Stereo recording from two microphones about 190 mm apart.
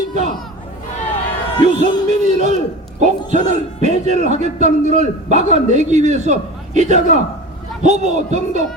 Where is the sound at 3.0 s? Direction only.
40° right (ahead or behind).